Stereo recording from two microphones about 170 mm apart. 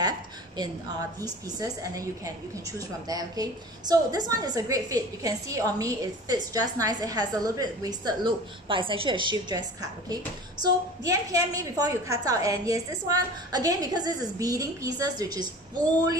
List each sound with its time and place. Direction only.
1.2 s a woman's voice: 20° right (ahead or behind)